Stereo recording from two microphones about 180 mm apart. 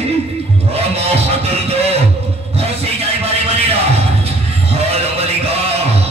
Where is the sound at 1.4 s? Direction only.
35° right (ahead or behind).